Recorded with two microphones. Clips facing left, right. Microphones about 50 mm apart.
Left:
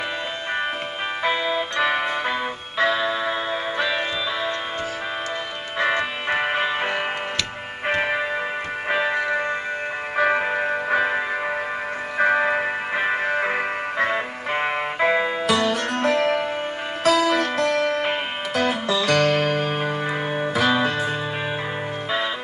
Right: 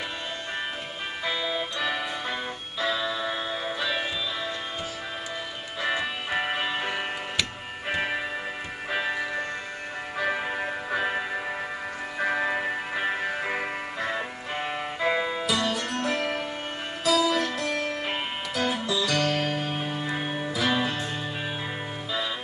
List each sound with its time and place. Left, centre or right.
1.2 s music: left
5.8 s music: left
9.1 s music: left
10.1 s music: left